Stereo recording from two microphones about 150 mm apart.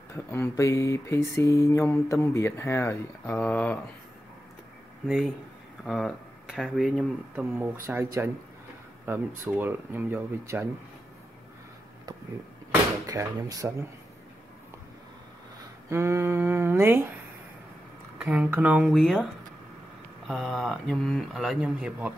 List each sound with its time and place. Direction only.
0.1 s speech: 15° left (ahead or behind)
5.0 s speech: 5° right (ahead or behind)
7.8 s speech: 20° right (ahead or behind)
13.0 s speech: 25° right (ahead or behind)
15.9 s speech: 15° right (ahead or behind)
18.2 s speech: 10° right (ahead or behind)
20.2 s speech: centre (ahead or behind)